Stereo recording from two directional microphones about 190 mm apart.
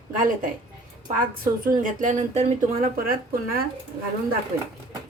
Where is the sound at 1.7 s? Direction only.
45° right (ahead or behind).